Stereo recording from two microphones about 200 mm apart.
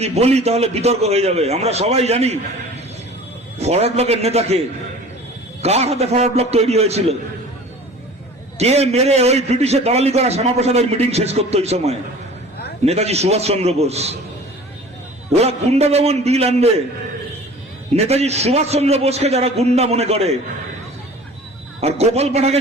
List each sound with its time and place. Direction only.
0.0 s a man's voice: 30° right (ahead or behind)
5.6 s a man's voice: 30° right (ahead or behind)
8.5 s a man's voice: 30° right (ahead or behind)
15.3 s a man's voice: 30° right (ahead or behind)
17.9 s a man's voice: 30° right (ahead or behind)
21.8 s a man's voice: 30° right (ahead or behind)